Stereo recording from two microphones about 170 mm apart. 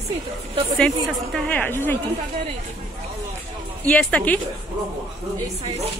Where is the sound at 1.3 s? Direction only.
10° left (ahead or behind).